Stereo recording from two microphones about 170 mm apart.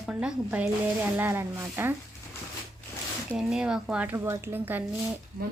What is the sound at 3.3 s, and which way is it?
Speech, 5° right (ahead or behind).